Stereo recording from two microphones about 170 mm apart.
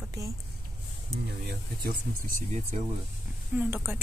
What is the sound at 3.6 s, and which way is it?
Speech, 10° right (ahead or behind).